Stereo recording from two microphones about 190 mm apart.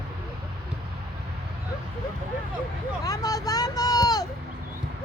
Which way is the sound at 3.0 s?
20° left (ahead or behind).